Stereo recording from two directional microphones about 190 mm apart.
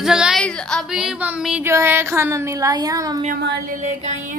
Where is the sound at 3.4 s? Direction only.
60° right (ahead or behind); by 4.4 s 40° right (ahead or behind).